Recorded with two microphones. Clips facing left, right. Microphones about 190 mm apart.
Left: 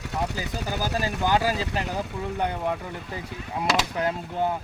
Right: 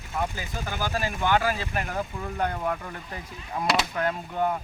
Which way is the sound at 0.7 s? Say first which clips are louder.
Left 1 dB; 40° left (ahead or behind).